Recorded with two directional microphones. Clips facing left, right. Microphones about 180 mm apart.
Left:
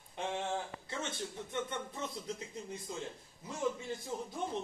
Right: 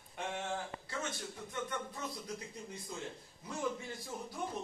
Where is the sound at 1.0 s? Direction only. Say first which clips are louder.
Left 2 dB; 25° left (ahead or behind).